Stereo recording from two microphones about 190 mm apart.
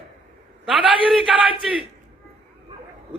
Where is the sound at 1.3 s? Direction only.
Centre (ahead or behind).